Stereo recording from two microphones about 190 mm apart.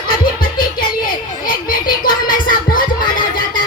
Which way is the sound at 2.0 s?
45° left (ahead or behind).